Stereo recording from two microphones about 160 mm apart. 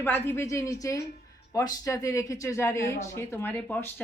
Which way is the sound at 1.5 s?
20° left (ahead or behind).